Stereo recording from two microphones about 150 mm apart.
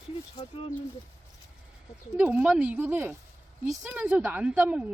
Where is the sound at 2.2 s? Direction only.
10° right (ahead or behind).